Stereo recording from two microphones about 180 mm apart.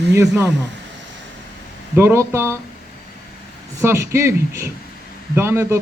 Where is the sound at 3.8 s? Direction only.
15° right (ahead or behind).